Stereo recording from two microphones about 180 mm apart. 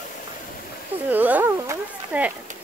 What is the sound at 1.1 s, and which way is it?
Speech, 10° right (ahead or behind).